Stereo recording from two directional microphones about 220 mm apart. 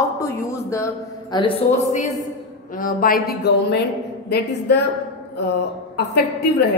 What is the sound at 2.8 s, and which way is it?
Speech, 40° left (ahead or behind).